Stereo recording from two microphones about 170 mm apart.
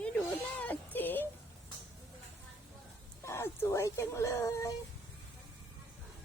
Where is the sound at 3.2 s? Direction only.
15° left (ahead or behind).